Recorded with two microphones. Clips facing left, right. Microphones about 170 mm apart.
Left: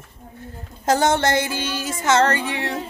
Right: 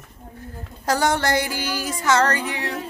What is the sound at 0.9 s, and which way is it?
Speech, 25° left (ahead or behind).